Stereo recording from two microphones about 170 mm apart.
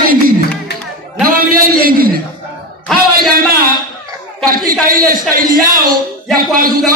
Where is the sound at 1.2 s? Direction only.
60° right (ahead or behind).